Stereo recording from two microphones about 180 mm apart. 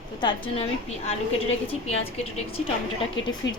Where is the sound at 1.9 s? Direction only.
35° left (ahead or behind).